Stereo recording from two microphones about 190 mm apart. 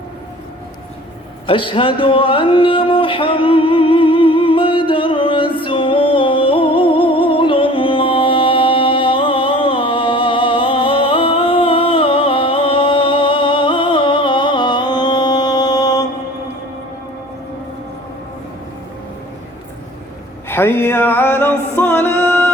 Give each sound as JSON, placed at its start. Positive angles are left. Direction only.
{"t": 1.5, "sound": "music", "side_deg": 25}
{"t": 20.5, "sound": "music", "side_deg": 10}